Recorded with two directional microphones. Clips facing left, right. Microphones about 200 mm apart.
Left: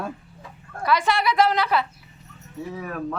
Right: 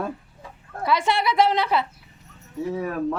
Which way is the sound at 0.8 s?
25° right (ahead or behind).